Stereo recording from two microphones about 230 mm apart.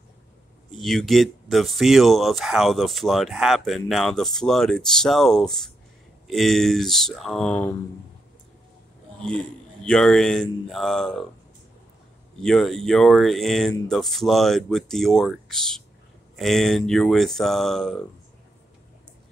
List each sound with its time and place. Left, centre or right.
0.7 s speech: centre
9.2 s speech: centre
12.4 s speech: centre